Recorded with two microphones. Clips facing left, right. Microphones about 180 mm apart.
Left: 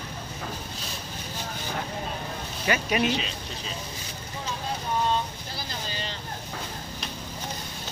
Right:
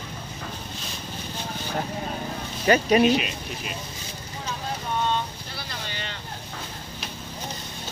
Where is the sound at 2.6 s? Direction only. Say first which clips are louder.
Right 7 dB; 35° right (ahead or behind).